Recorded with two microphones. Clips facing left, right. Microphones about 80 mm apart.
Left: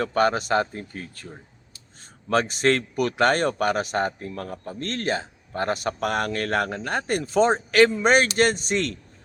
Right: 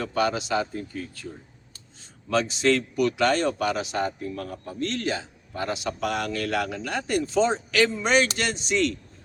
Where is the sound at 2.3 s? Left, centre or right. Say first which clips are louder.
Left 1 dB; left.